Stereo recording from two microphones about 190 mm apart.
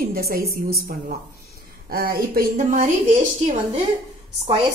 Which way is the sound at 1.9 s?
50° right (ahead or behind).